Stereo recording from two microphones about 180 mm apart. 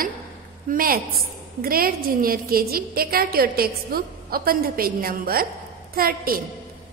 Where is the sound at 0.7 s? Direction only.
55° right (ahead or behind).